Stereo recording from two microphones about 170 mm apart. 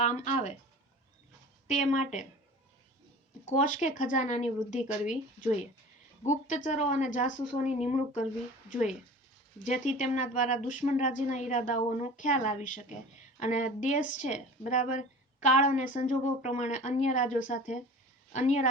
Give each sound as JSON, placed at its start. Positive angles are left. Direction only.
{"t": 0.0, "sound": "speech", "side_deg": 45}
{"t": 1.6, "sound": "speech", "side_deg": 45}
{"t": 3.4, "sound": "speech", "side_deg": 45}